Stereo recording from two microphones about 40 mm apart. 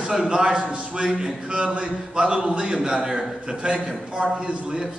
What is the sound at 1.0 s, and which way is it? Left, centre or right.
A man's voice, right.